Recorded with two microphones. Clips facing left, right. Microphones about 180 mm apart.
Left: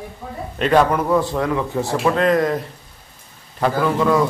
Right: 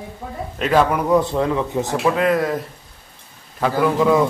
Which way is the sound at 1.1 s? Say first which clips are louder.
Right 1 dB; 20° right (ahead or behind).